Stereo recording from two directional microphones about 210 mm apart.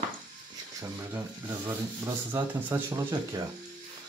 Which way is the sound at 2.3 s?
15° right (ahead or behind).